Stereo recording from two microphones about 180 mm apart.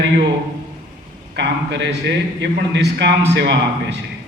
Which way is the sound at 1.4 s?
80° right.